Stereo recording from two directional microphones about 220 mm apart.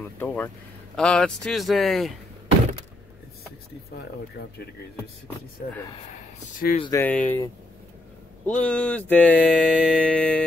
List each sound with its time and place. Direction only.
0.0 s a man's voice: 5° left (ahead or behind)
6.8 s speech: 15° left (ahead or behind)
8.5 s a man's voice: 5° left (ahead or behind)